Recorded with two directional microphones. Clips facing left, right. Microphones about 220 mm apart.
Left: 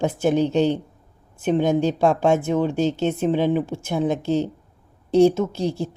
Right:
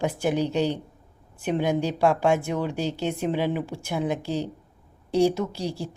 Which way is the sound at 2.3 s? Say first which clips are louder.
Left 5 dB; 20° left (ahead or behind).